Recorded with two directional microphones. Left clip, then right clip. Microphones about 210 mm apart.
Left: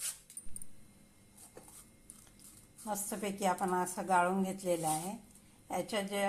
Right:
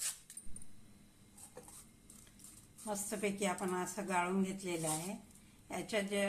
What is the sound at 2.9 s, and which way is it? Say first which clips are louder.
A woman's voice: even; 15° left (ahead or behind).